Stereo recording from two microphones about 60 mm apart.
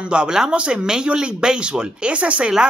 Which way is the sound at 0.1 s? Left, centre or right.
Centre.